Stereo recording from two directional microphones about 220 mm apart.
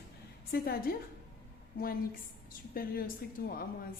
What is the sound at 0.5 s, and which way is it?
Speech, 45° left (ahead or behind).